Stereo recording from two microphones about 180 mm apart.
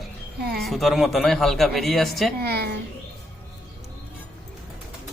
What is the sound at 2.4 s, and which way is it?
Speech, 60° right (ahead or behind).